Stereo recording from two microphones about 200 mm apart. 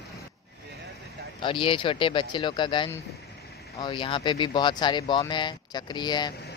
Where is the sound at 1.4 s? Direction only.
25° left (ahead or behind).